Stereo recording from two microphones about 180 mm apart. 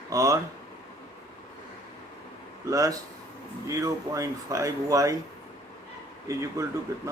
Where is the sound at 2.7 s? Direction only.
20° right (ahead or behind).